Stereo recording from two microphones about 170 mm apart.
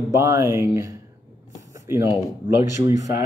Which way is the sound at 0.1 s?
15° right (ahead or behind).